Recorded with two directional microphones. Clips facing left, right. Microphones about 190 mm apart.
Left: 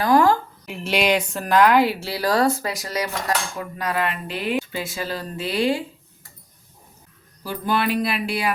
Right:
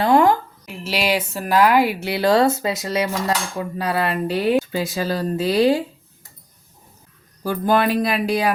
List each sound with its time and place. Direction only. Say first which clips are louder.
0.0 s a woman's voice: right 2 dB; 25° right (ahead or behind)
0.6 s speech: left 2 dB; centre (ahead or behind); by 5.8 s 40° right (ahead or behind)
7.4 s speech: right 5 dB; 45° right (ahead or behind)